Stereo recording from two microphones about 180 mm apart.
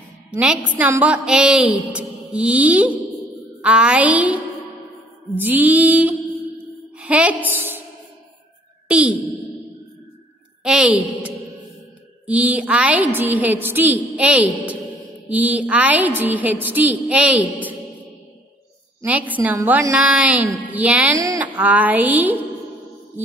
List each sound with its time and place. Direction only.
0.4 s a woman's voice: 5° right (ahead or behind)
7.5 s music: 10° right (ahead or behind)
8.8 s a sound: 5° right (ahead or behind)
10.6 s a woman's voice: 5° right (ahead or behind)
19.0 s a woman's voice: 10° right (ahead or behind)